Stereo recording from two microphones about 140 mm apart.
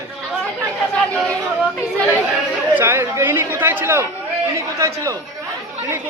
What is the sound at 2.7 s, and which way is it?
A man's voice, 15° right (ahead or behind).